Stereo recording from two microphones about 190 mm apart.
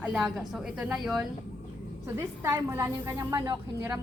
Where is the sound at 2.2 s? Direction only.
15° right (ahead or behind).